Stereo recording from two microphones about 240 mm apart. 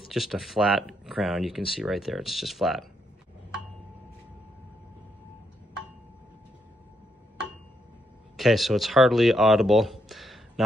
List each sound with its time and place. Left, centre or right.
0.1 s speech: centre
8.4 s speech: centre